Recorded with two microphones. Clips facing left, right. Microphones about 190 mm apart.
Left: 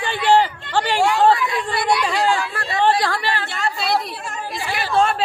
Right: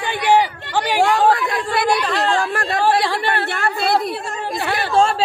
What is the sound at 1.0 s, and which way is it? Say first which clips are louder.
Speech: right 1 dB; 55° right (ahead or behind).